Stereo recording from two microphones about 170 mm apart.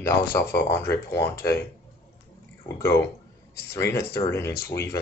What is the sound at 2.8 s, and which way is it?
Speech, 15° left (ahead or behind).